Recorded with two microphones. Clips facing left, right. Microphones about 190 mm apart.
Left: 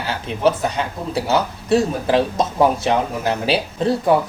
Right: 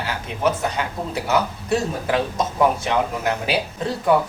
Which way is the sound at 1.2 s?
30° left (ahead or behind).